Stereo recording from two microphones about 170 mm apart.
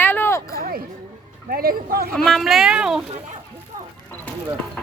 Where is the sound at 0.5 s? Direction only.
60° right (ahead or behind).